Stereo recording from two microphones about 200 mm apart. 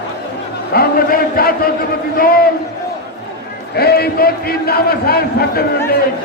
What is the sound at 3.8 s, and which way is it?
A man's voice, 50° left (ahead or behind).